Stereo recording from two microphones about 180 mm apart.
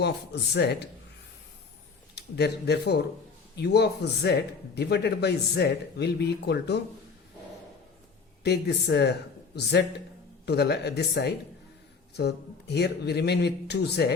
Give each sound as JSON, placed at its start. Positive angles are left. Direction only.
{"t": 0.5, "sound": "a man's voice", "side_deg": 65}
{"t": 2.1, "sound": "a man's voice", "side_deg": 65}
{"t": 8.4, "sound": "speech", "side_deg": 65}
{"t": 10.4, "sound": "a man's voice", "side_deg": 65}